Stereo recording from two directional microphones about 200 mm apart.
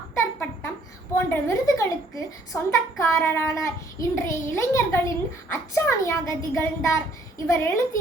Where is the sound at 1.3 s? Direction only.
15° left (ahead or behind).